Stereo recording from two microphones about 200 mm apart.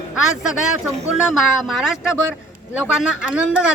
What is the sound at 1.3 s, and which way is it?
Speech, centre (ahead or behind).